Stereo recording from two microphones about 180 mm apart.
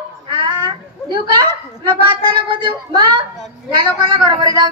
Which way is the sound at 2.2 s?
25° right (ahead or behind).